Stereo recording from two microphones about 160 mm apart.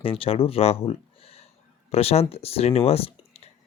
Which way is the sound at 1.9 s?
40° left (ahead or behind).